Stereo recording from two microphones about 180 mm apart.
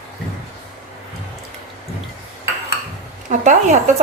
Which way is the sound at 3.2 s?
45° right (ahead or behind).